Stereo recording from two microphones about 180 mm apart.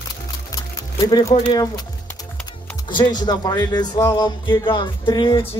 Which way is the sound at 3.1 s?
20° left (ahead or behind).